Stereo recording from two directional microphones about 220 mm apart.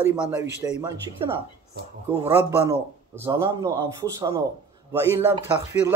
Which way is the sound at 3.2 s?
15° right (ahead or behind).